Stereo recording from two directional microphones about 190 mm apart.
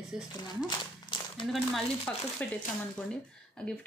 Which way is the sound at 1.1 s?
25° left (ahead or behind).